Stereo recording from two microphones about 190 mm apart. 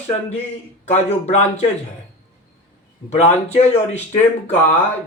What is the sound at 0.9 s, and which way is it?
Speech, 35° left (ahead or behind).